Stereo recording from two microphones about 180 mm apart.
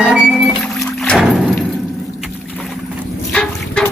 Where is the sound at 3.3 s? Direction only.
5° left (ahead or behind).